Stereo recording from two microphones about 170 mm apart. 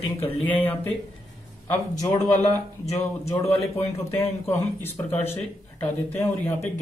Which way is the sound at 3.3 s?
15° left (ahead or behind).